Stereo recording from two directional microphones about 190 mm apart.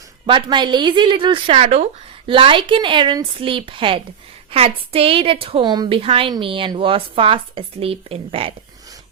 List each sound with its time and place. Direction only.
0.3 s a woman's voice: 25° right (ahead or behind)